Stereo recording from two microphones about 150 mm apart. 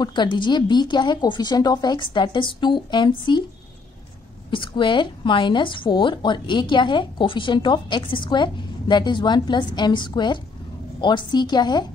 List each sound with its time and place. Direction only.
0.0 s a woman's voice: 30° left (ahead or behind)
4.5 s a woman's voice: 35° left (ahead or behind)